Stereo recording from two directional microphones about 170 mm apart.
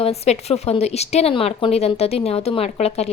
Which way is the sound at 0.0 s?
40° left (ahead or behind).